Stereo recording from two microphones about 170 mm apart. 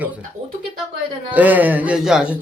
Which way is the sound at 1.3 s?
10° right (ahead or behind).